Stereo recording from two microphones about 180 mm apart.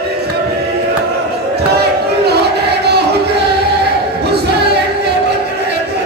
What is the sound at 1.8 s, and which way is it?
Crowd, 65° right (ahead or behind).